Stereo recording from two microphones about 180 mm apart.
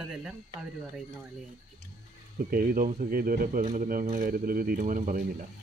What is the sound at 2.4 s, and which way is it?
Speech, 55° right (ahead or behind).